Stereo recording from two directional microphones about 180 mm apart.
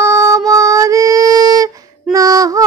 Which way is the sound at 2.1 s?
20° right (ahead or behind).